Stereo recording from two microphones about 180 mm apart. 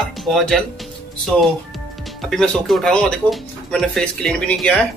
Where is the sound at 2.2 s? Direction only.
Centre (ahead or behind).